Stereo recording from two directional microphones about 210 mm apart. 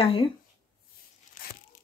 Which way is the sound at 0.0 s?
25° left (ahead or behind).